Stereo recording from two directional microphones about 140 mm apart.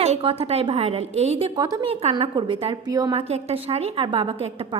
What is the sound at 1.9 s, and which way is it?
Speech, 50° right (ahead or behind).